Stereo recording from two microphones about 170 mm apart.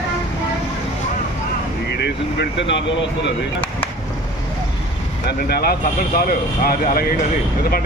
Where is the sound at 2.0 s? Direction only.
90° left.